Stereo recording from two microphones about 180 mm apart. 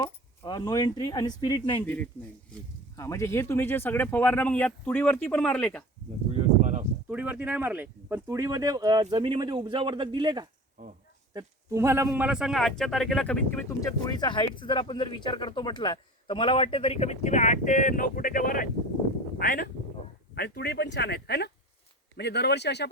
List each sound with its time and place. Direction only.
0.0 s speech: 25° left (ahead or behind)
2.9 s speech: 15° left (ahead or behind)
6.3 s a sound: 40° right (ahead or behind)
7.1 s a man's voice: 10° right (ahead or behind); by 19.6 s 55° left (ahead or behind)
20.3 s speech: 65° left (ahead or behind)